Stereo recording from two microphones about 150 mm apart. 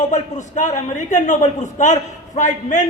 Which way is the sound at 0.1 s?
55° left (ahead or behind).